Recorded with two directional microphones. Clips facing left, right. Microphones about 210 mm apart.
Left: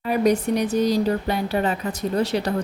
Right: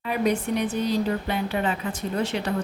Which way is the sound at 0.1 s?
40° left (ahead or behind).